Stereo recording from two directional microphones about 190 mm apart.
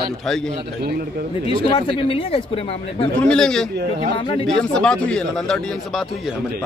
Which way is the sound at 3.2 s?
5° left (ahead or behind).